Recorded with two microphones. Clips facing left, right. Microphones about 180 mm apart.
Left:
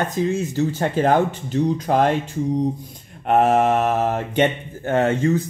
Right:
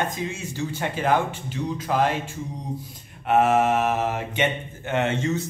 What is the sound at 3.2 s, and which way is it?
Mantra, 40° left (ahead or behind).